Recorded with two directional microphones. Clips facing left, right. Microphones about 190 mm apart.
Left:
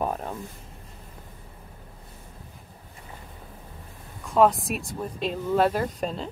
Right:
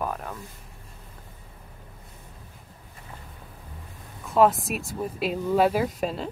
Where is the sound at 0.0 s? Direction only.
30° left (ahead or behind).